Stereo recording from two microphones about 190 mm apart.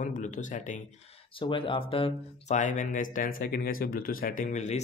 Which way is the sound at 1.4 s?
25° left (ahead or behind).